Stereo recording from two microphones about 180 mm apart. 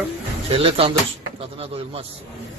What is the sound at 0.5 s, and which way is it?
Speech, 30° right (ahead or behind).